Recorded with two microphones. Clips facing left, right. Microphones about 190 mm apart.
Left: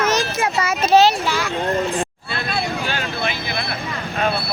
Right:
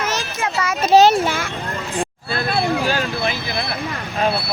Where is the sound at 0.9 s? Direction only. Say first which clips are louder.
Right 2 dB; 50° right (ahead or behind).